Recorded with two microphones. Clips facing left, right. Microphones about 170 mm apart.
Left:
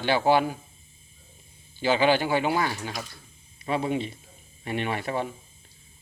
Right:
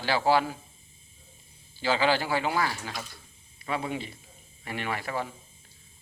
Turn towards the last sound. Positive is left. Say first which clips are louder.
# left 4 dB
turn(degrees=25)  # may be behind; listen again after turning